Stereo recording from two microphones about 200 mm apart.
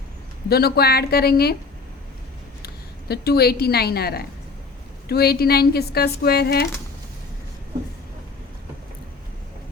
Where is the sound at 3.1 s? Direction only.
55° left (ahead or behind).